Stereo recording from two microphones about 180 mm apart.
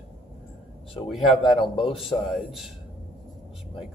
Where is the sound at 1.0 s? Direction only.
30° left (ahead or behind).